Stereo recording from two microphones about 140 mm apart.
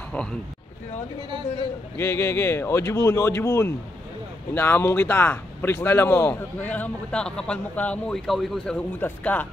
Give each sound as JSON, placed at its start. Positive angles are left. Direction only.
{"t": 0.1, "sound": "a man's voice", "side_deg": 5}
{"t": 2.0, "sound": "speech", "side_deg": 20}